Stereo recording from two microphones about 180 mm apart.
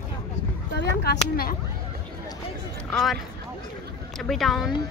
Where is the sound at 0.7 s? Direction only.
70° left (ahead or behind).